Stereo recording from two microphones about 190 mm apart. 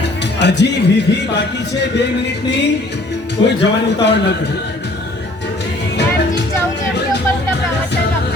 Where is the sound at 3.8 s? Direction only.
65° left (ahead or behind).